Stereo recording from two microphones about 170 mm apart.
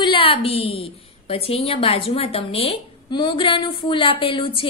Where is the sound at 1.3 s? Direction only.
35° left (ahead or behind).